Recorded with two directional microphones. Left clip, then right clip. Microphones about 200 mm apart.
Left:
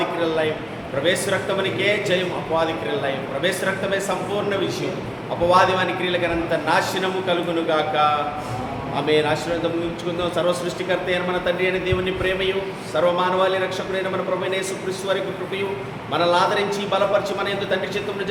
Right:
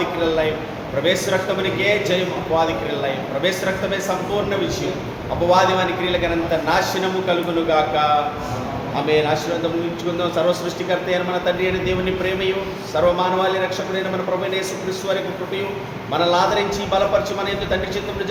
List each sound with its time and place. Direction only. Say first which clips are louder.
0.2 s a man's voice: right 2 dB; 10° left (ahead or behind)
5.5 s a man's voice: right 1 dB; 15° left (ahead or behind)
16.1 s a man's voice: right 1 dB; 15° left (ahead or behind)